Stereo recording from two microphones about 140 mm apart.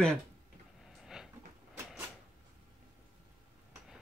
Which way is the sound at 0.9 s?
5° right (ahead or behind).